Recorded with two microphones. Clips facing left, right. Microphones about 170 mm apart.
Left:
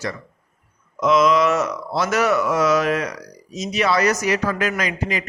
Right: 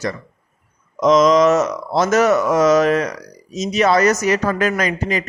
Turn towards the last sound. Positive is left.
turn(degrees=-45)  # may be behind; listen again after turning